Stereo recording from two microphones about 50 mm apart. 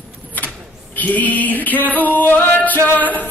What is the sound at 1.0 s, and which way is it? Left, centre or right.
Music, left.